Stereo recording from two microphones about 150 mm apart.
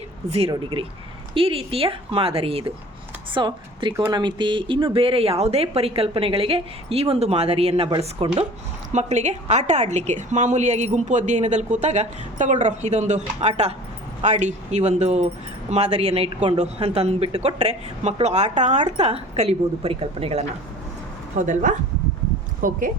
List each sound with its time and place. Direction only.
0.3 s a woman's voice: 40° right (ahead or behind)
8.9 s a woman's voice: 50° right (ahead or behind)
21.3 s speech: 55° right (ahead or behind)